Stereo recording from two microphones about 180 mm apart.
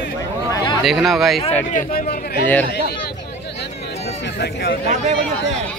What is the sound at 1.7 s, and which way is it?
Speech, 50° left (ahead or behind).